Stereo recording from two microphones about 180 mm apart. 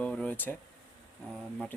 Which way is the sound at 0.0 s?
5° left (ahead or behind).